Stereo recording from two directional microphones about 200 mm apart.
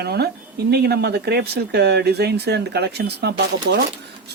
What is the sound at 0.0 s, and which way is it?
Speech, 55° right (ahead or behind).